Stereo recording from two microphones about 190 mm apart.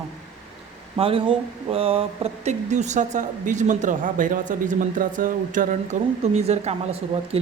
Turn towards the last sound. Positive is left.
turn(degrees=-30)  # may be behind; listen again after turning